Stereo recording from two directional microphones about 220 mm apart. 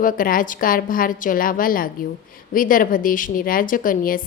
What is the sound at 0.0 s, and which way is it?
A woman's voice, 40° left (ahead or behind).